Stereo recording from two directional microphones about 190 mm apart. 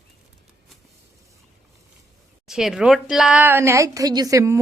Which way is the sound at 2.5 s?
Centre (ahead or behind).